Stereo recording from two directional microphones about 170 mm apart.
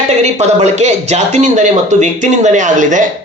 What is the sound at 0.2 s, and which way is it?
A man's voice, 40° right (ahead or behind).